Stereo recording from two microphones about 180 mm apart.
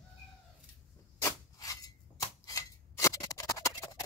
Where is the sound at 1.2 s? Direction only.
20° left (ahead or behind).